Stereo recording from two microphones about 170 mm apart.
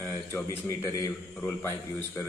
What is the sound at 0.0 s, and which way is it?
A man's voice, 15° left (ahead or behind).